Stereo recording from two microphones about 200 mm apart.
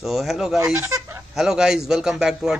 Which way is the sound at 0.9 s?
15° right (ahead or behind).